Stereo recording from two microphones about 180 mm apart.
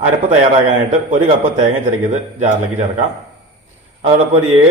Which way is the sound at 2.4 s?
45° right (ahead or behind).